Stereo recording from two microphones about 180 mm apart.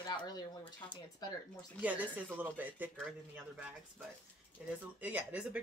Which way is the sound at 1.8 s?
10° right (ahead or behind).